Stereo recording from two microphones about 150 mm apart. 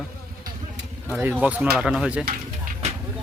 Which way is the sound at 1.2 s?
10° right (ahead or behind).